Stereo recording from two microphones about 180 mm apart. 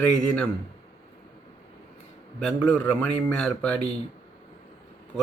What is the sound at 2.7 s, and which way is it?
Speech, 5° left (ahead or behind).